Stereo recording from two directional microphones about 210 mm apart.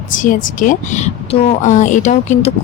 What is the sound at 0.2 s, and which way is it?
Speech, 40° left (ahead or behind).